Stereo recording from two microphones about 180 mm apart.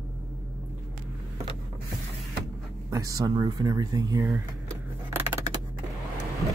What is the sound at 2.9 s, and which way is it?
Speech, 20° right (ahead or behind).